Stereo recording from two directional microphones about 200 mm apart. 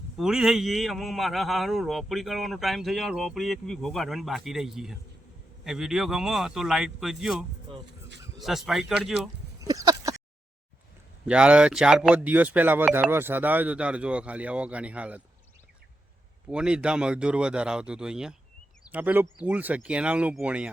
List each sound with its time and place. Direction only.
0.2 s a man's voice: centre (ahead or behind)
7.7 s speech: 25° right (ahead or behind)
8.4 s a man's voice: centre (ahead or behind)
9.6 s a sound: 20° right (ahead or behind)
11.3 s speech: 5° right (ahead or behind)
16.5 s a man's voice: 5° right (ahead or behind)